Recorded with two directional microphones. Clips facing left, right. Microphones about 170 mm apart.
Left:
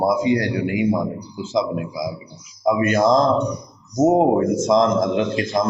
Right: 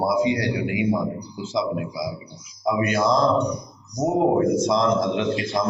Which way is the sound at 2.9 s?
45° left (ahead or behind).